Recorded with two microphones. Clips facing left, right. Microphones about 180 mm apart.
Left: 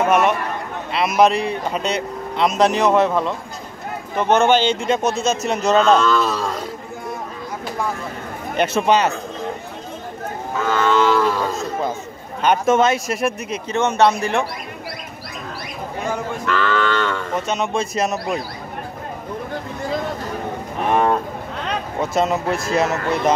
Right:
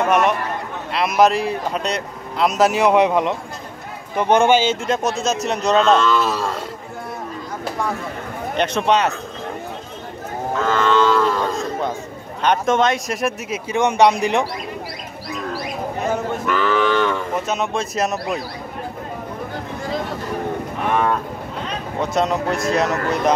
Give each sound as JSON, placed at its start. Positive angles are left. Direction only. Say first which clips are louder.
{"t": 0.0, "sound": "a man's voice", "louder": "left 1 dB", "side_deg": 5}
{"t": 8.5, "sound": "speech", "louder": "left 1 dB", "side_deg": 5}
{"t": 10.7, "sound": "cattle", "louder": "even", "side_deg": 10}
{"t": 12.4, "sound": "speech", "louder": "left 1 dB", "side_deg": 5}
{"t": 13.7, "sound": "cattle", "louder": "right 1 dB", "side_deg": -15}
{"t": 16.1, "sound": "cattle", "louder": "right 1 dB", "side_deg": -15}
{"t": 20.9, "sound": "speech", "louder": "left 2 dB", "side_deg": 35}
{"t": 22.1, "sound": "speech", "louder": "even", "side_deg": 5}